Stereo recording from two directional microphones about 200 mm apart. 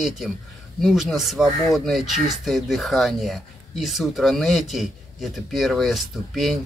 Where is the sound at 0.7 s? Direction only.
Centre (ahead or behind).